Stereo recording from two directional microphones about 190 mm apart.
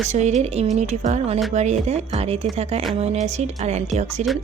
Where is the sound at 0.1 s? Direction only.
35° right (ahead or behind).